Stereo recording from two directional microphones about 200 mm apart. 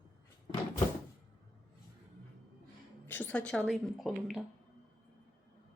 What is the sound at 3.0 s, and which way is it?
A woman's voice, 10° left (ahead or behind).